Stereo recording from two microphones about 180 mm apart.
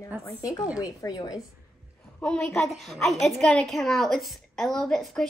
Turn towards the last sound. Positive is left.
turn(degrees=5)  # may be behind; listen again after turning